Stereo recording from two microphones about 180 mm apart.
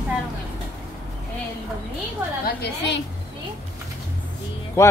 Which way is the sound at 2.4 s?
65° left (ahead or behind).